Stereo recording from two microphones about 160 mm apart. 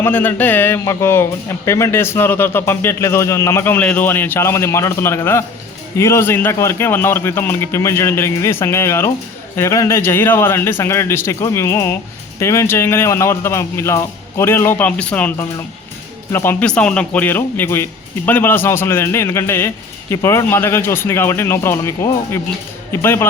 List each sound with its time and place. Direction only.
0.0 s speech: 10° left (ahead or behind)